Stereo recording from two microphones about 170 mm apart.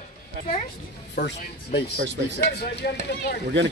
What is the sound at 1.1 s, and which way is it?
Speech, 80° left.